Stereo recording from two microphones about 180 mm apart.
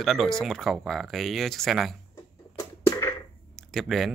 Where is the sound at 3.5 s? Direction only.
Centre (ahead or behind).